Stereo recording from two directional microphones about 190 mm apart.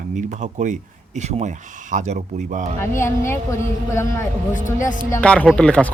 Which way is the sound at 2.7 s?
15° left (ahead or behind).